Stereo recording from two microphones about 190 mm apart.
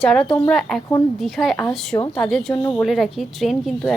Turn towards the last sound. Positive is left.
turn(degrees=0)  # may be behind; listen again after turning